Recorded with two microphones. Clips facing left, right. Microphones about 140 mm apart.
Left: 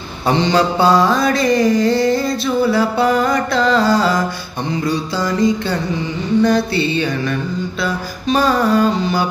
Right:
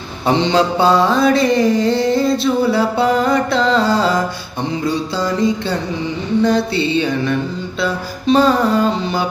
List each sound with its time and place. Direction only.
0.4 s mantra: 25° right (ahead or behind)